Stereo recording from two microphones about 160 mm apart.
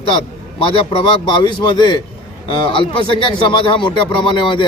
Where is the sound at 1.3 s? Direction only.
30° left (ahead or behind).